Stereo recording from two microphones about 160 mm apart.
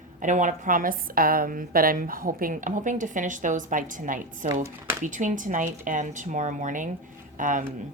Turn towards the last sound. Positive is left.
turn(degrees=-55)  # may be behind; listen again after turning